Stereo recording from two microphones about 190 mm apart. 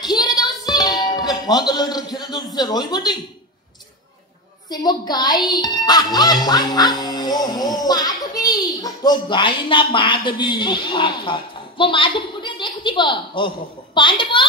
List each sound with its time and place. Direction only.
0.0 s music: 20° left (ahead or behind)
0.7 s speech: 20° left (ahead or behind)
4.6 s speech: 20° left (ahead or behind)